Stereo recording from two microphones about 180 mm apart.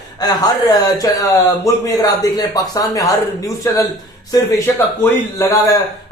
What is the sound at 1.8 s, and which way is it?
A man's voice, 20° left (ahead or behind).